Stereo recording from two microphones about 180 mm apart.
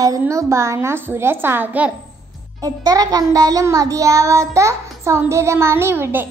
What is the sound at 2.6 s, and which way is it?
Child singing, 20° right (ahead or behind).